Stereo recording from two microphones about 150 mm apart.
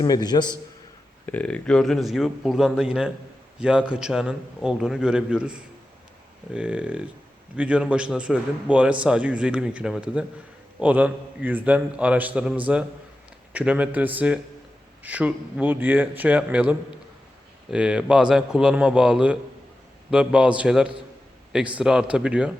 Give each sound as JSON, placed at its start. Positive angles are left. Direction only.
{"t": 0.0, "sound": "a man's voice", "side_deg": 30}
{"t": 1.3, "sound": "a man's voice", "side_deg": 10}